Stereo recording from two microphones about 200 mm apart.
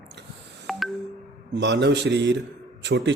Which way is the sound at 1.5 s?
60° right (ahead or behind).